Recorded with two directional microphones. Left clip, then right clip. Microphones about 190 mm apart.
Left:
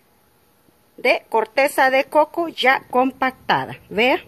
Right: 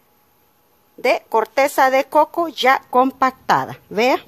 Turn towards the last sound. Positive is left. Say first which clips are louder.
# right 1 dB
turn(degrees=-20)  # may be behind; listen again after turning